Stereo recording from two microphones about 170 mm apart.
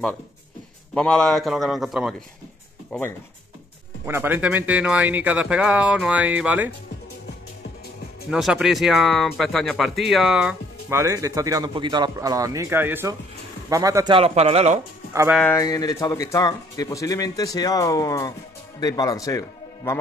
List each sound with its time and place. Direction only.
0.9 s a man's voice: 5° left (ahead or behind)
4.0 s speech: 10° right (ahead or behind)
8.3 s speech: 5° right (ahead or behind); by 14.1 s 20° right (ahead or behind)
14.1 s a man's voice: 40° right (ahead or behind)
15.4 s speech: 20° left (ahead or behind)